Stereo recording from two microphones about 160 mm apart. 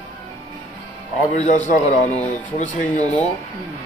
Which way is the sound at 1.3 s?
50° left (ahead or behind).